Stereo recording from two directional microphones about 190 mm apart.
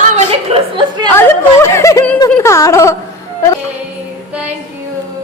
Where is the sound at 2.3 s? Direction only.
10° left (ahead or behind).